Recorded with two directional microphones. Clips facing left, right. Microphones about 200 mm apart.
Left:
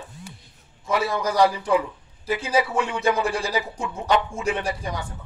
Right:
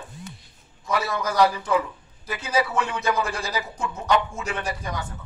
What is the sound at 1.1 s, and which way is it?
A man's voice, 10° left (ahead or behind).